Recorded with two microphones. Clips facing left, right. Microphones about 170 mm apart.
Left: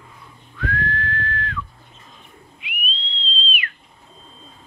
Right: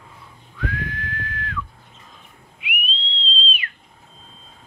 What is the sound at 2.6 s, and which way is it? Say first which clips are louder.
Whistling: right 4 dB; 15° right (ahead or behind).